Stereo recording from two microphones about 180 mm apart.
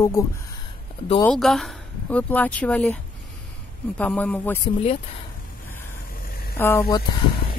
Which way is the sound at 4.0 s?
10° left (ahead or behind).